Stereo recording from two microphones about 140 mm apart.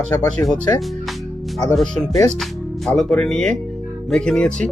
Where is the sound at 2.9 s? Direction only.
5° left (ahead or behind).